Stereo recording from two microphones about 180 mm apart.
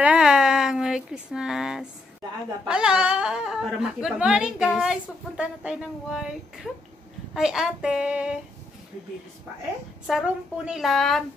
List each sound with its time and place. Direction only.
0.0 s a sound: 5° right (ahead or behind)
2.6 s speech: 5° right (ahead or behind)
10.0 s speech: 5° right (ahead or behind)